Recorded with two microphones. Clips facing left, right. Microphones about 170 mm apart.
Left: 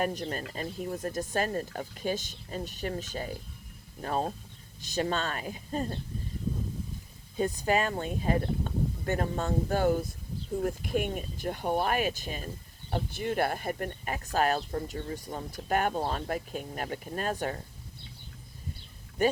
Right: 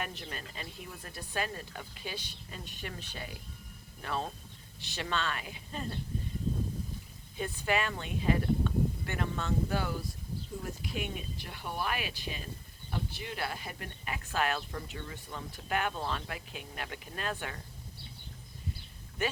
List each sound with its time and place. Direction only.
0.0 s speech: 40° left (ahead or behind)
7.3 s speech: 40° left (ahead or behind)
19.2 s speech: 40° left (ahead or behind)